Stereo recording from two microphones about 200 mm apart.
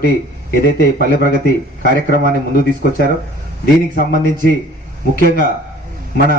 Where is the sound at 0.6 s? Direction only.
50° left (ahead or behind).